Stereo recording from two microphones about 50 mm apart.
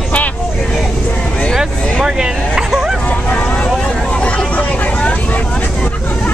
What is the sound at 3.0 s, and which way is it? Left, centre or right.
Hubbub, left.